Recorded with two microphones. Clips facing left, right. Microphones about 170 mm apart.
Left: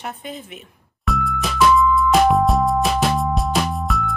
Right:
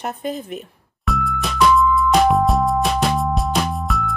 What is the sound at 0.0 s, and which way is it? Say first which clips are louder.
Speech: right 6 dB; 40° right (ahead or behind).